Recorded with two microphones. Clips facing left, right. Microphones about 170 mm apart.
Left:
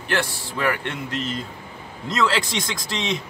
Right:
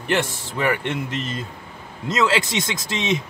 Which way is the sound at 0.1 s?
20° right (ahead or behind).